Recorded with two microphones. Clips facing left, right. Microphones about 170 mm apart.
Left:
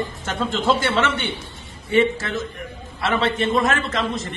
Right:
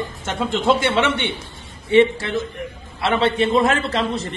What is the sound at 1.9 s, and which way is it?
A man's voice, 30° right (ahead or behind).